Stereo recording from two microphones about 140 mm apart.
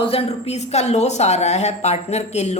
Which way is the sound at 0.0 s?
40° left (ahead or behind).